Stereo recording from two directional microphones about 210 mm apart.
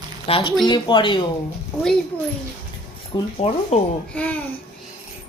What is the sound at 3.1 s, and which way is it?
Speech, 25° left (ahead or behind).